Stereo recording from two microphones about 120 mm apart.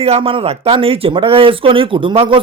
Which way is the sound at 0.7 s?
45° right (ahead or behind).